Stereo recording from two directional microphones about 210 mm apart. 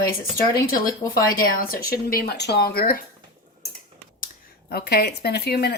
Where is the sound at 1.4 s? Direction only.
45° left (ahead or behind).